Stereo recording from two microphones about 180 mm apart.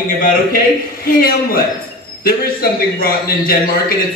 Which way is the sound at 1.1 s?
55° left (ahead or behind).